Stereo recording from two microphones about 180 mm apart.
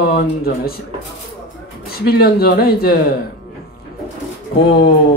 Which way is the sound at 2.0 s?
55° left (ahead or behind).